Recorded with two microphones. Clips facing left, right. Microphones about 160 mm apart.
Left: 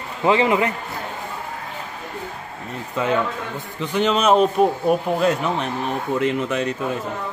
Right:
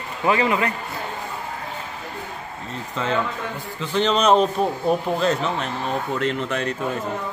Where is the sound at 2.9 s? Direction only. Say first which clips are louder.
Left 3 dB; 10° left (ahead or behind).